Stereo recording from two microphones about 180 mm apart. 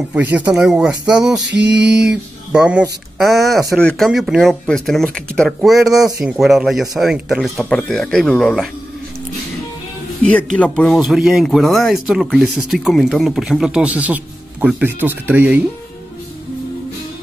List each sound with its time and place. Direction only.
0.1 s speech: 10° right (ahead or behind)
1.5 s mantra: 75° right (ahead or behind)
2.0 s speech: 5° right (ahead or behind)
10.2 s speech: 5° left (ahead or behind)